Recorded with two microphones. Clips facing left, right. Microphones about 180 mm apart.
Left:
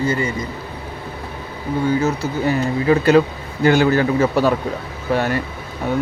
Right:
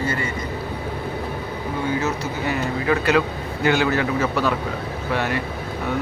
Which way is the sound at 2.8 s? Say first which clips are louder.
Left 6 dB; 30° left (ahead or behind).